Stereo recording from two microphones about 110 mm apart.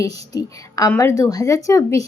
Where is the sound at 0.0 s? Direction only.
30° left (ahead or behind).